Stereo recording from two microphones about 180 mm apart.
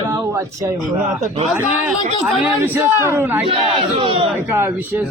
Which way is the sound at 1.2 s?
35° right (ahead or behind).